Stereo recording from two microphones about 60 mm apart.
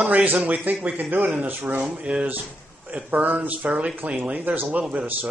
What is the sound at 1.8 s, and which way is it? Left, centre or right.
Speech, centre.